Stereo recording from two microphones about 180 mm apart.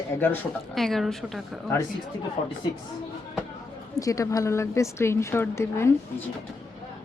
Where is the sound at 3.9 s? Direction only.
20° left (ahead or behind).